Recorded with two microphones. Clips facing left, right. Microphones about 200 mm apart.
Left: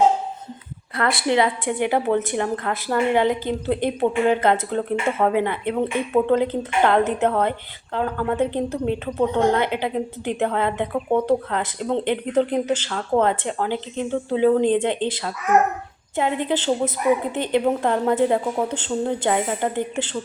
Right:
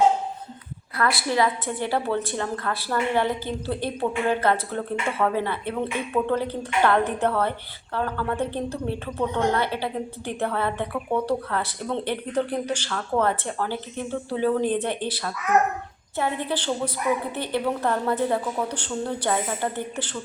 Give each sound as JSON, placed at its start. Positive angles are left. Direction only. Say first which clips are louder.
{"t": 0.9, "sound": "a woman's voice", "louder": "left 3 dB", "side_deg": 25}